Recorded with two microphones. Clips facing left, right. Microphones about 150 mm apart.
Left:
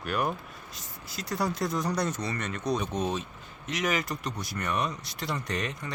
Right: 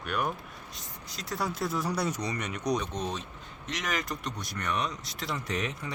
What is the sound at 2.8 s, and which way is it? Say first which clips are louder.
Speech: left 3 dB; 5° left (ahead or behind).